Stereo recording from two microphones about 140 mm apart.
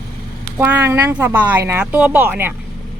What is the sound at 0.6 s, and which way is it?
Speech, 15° right (ahead or behind).